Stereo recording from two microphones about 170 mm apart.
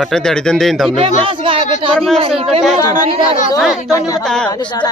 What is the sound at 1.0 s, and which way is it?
Speech, 30° right (ahead or behind).